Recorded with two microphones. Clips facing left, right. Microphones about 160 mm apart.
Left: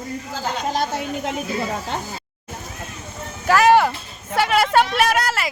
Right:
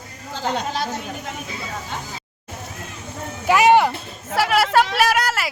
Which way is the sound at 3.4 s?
15° right (ahead or behind).